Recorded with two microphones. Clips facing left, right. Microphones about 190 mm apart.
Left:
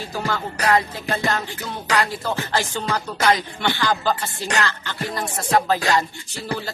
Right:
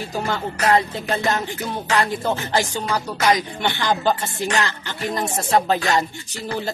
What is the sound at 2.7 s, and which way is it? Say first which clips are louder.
Speech: right 1 dB; 15° right (ahead or behind).